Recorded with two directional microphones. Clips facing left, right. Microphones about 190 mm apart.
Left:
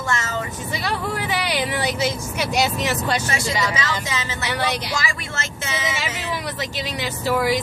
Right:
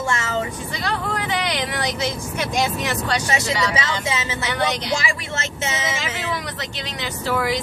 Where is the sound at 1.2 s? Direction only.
10° left (ahead or behind).